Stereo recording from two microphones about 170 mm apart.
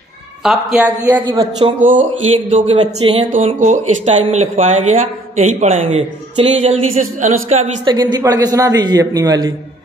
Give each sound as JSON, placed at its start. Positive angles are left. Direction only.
{"t": 0.4, "sound": "speech", "side_deg": 0}
{"t": 1.2, "sound": "a man's voice", "side_deg": -25}
{"t": 2.5, "sound": "speech", "side_deg": -40}
{"t": 3.4, "sound": "speech", "side_deg": -45}
{"t": 7.0, "sound": "a sound", "side_deg": -50}
{"t": 7.8, "sound": "a man's voice", "side_deg": -25}